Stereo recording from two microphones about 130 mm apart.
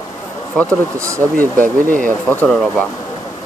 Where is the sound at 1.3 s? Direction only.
90° right.